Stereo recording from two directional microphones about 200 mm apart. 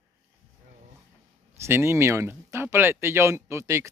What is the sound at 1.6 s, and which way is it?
Speech, 10° right (ahead or behind).